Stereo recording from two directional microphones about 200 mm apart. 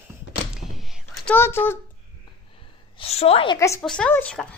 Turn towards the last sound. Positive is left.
turn(degrees=5)  # may be behind; listen again after turning